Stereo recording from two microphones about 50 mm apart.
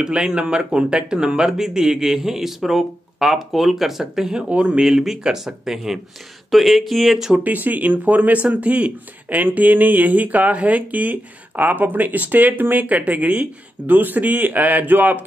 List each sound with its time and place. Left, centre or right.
0.0 s speech: centre
4.5 s speech: right; by 7.3 s centre
7.3 s speech: right